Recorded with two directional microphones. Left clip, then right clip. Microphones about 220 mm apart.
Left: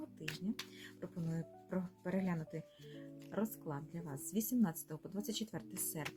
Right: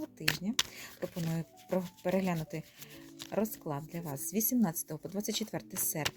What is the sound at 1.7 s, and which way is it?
Speech, 35° right (ahead or behind).